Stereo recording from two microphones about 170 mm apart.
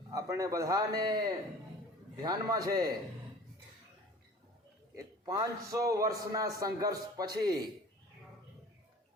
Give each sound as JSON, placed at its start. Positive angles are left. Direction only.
{"t": 0.1, "sound": "a man's voice", "side_deg": -20}
{"t": 4.9, "sound": "a man's voice", "side_deg": -20}